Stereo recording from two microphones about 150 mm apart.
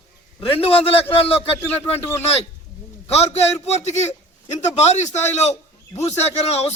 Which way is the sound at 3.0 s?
45° left (ahead or behind).